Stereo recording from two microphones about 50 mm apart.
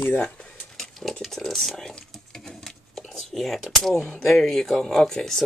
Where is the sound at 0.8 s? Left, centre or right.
Centre.